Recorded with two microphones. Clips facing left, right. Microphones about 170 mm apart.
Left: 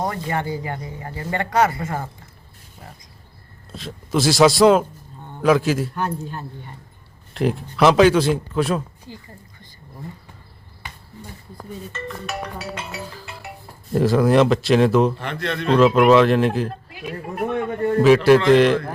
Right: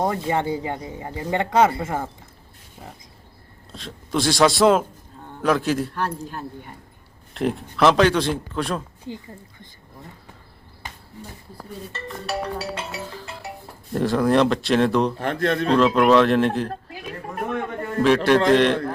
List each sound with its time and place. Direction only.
0.0 s speech: 20° right (ahead or behind)
3.7 s a man's voice: 5° left (ahead or behind)
11.9 s music: 35° right (ahead or behind)
13.9 s speech: 5° left (ahead or behind)
15.2 s speech: 45° right (ahead or behind)
15.7 s speech: centre (ahead or behind)
18.0 s speech: 5° left (ahead or behind)